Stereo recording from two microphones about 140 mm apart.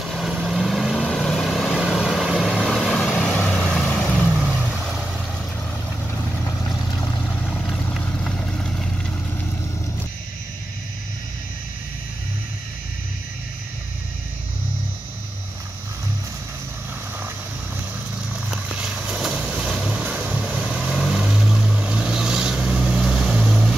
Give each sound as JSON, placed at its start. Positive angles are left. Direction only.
{"t": 0.1, "sound": "vehicle", "side_deg": 0}
{"t": 7.2, "sound": "vehicle", "side_deg": 10}
{"t": 18.5, "sound": "vehicle", "side_deg": -5}